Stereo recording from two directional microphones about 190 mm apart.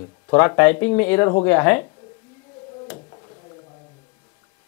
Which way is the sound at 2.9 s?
25° left (ahead or behind).